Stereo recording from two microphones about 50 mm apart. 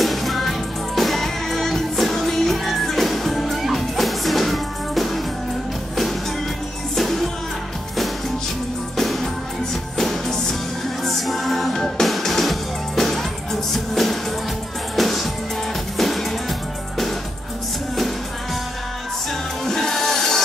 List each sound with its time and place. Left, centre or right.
0.0 s music: centre
7.0 s music: centre
8.9 s music: centre
19.6 s music: centre